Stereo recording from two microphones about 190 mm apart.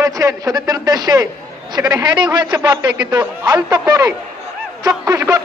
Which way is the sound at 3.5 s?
20° right (ahead or behind).